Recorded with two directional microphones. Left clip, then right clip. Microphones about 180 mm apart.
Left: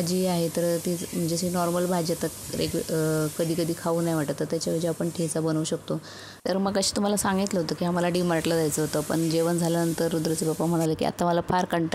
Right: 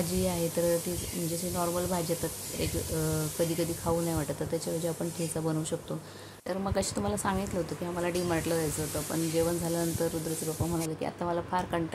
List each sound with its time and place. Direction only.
0.2 s speech: 35° left (ahead or behind)
6.4 s speech: 50° left (ahead or behind)